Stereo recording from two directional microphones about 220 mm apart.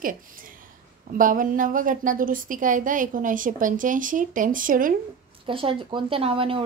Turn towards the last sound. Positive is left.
turn(degrees=-25)  # may be behind; listen again after turning